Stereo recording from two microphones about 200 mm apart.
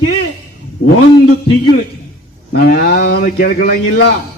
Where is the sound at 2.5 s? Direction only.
50° left (ahead or behind).